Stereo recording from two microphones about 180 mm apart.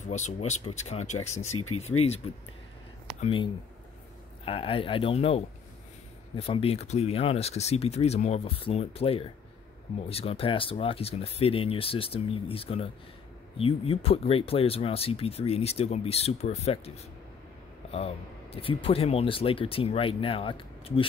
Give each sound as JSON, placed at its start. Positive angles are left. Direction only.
{"t": 0.0, "sound": "speech", "side_deg": 40}
{"t": 4.5, "sound": "speech", "side_deg": 30}